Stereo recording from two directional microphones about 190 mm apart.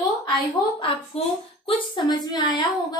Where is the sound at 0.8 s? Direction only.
30° left (ahead or behind).